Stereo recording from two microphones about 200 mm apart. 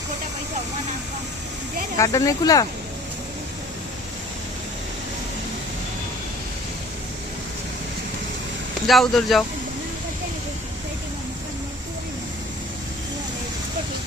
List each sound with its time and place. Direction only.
2.0 s speech: 15° left (ahead or behind)
8.9 s speech: centre (ahead or behind)